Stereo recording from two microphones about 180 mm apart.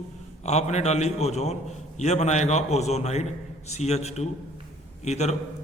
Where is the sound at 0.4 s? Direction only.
40° left (ahead or behind).